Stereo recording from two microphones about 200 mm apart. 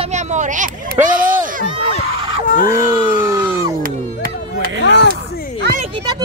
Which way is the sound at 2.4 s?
40° left (ahead or behind).